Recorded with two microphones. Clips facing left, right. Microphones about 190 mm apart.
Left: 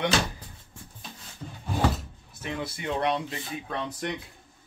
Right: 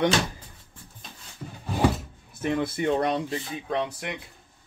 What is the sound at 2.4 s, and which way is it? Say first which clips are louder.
Speech: right 8 dB; 50° right (ahead or behind).